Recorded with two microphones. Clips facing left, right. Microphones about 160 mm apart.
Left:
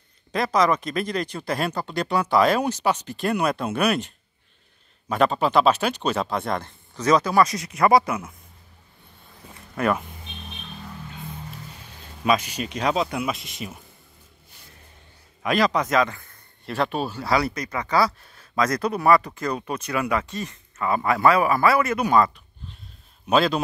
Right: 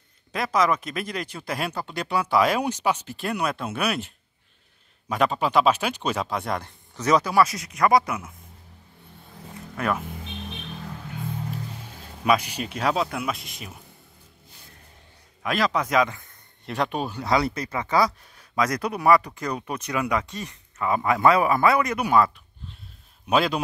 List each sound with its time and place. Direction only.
0.3 s speech: 5° right (ahead or behind)
5.1 s speech: 10° right (ahead or behind)
12.3 s speech: 10° right (ahead or behind)
15.4 s speech: centre (ahead or behind)